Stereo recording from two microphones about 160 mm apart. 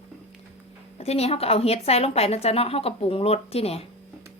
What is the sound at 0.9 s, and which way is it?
A woman's voice, 40° left (ahead or behind).